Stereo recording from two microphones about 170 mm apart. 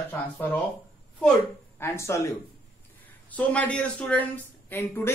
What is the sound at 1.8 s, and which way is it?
Speech, 15° left (ahead or behind).